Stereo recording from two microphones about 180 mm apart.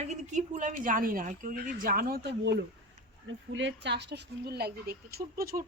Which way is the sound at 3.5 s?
80° right.